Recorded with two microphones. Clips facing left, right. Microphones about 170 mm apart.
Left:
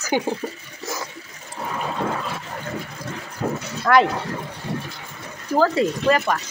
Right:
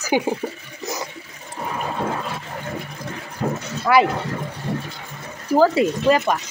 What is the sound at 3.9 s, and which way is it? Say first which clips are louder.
Speech: even; 10° right (ahead or behind).